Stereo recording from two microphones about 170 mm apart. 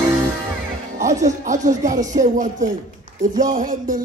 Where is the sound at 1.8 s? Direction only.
45° right (ahead or behind).